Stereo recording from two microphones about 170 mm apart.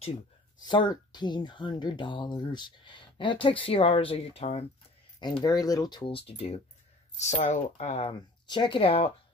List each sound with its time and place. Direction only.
0.6 s speech: 25° left (ahead or behind)
5.4 s speech: 20° left (ahead or behind); by 8.1 s 40° left (ahead or behind)
8.1 s speech: 25° left (ahead or behind)